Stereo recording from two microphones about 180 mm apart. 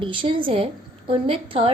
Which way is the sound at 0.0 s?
30° right (ahead or behind).